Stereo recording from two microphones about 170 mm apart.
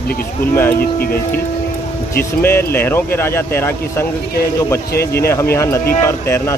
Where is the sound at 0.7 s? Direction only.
60° left (ahead or behind).